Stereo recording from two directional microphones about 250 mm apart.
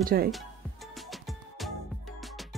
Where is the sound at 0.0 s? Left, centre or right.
Right.